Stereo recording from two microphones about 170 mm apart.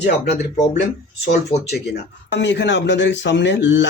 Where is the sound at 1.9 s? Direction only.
90° left.